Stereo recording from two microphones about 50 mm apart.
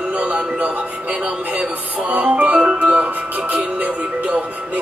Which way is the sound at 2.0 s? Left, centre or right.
Right.